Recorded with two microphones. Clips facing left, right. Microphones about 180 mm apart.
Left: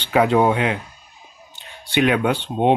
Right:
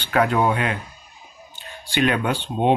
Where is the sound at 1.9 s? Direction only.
10° left (ahead or behind).